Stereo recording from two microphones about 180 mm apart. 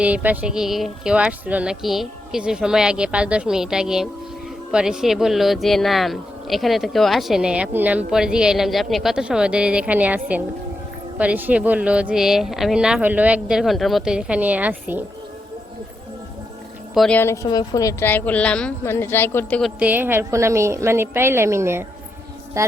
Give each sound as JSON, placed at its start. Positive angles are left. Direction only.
{"t": 0.0, "sound": "speech", "side_deg": -10}
{"t": 16.9, "sound": "a woman's voice", "side_deg": 0}
{"t": 17.2, "sound": "a woman's voice", "side_deg": 15}
{"t": 19.8, "sound": "speech", "side_deg": -10}